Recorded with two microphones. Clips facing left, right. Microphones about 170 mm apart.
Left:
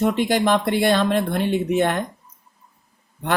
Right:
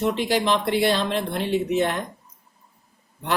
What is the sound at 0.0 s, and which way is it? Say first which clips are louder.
Speech: left 3 dB; 50° left (ahead or behind).